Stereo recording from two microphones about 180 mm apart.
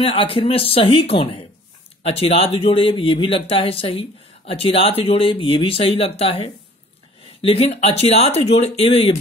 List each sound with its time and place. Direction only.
0.0 s speech: 30° left (ahead or behind)